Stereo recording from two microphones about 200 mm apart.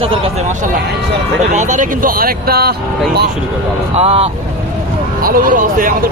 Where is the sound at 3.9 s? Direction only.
30° right (ahead or behind).